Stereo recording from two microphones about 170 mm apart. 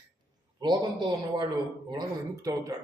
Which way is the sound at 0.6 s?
25° right (ahead or behind).